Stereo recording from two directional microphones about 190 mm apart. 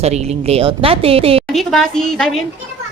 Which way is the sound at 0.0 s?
35° right (ahead or behind).